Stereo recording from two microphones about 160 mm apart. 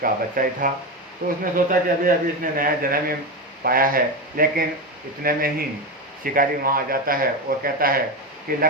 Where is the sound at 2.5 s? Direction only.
65° right (ahead or behind).